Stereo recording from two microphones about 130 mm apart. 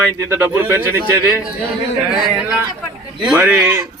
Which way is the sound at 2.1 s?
5° right (ahead or behind).